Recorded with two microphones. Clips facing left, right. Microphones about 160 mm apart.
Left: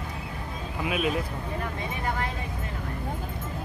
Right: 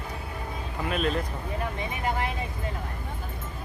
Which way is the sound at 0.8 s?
5° left (ahead or behind).